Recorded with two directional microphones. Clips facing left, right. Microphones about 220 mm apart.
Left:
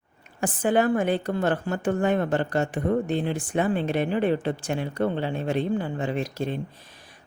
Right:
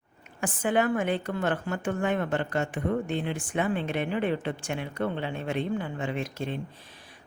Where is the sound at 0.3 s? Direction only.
35° left (ahead or behind).